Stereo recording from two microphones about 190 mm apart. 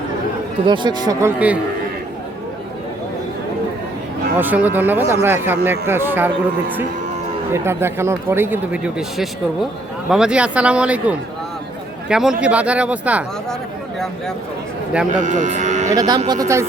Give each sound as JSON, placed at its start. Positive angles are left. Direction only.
{"t": 0.6, "sound": "speech", "side_deg": -25}
{"t": 4.4, "sound": "speech", "side_deg": -10}
{"t": 15.1, "sound": "speech", "side_deg": -40}
{"t": 16.0, "sound": "speech", "side_deg": -20}